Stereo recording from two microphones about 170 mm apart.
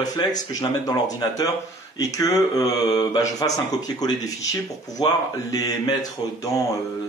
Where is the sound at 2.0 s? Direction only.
20° left (ahead or behind).